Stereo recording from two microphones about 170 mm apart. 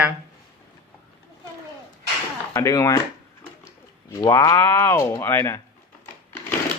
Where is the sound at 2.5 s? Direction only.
20° left (ahead or behind).